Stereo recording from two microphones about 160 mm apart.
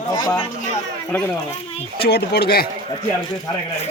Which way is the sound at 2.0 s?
85° left.